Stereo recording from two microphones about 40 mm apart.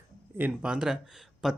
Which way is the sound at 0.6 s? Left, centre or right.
Right.